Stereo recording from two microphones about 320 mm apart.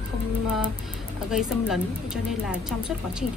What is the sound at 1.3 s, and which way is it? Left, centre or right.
Speech, centre.